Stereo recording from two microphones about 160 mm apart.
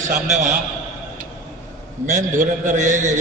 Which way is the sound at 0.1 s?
50° right (ahead or behind).